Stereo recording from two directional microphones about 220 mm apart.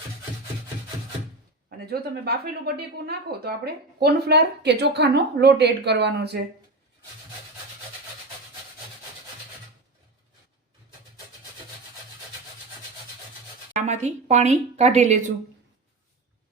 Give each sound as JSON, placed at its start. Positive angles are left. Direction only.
{"t": 1.9, "sound": "a woman's voice", "side_deg": -45}
{"t": 13.8, "sound": "a woman's voice", "side_deg": -30}